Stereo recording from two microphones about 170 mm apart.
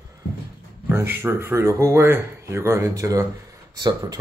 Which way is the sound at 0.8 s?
10° right (ahead or behind).